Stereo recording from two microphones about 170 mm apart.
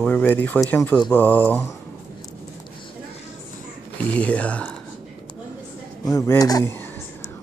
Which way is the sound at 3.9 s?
10° left (ahead or behind).